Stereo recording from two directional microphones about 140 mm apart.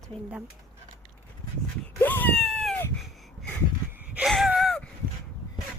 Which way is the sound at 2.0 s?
15° left (ahead or behind).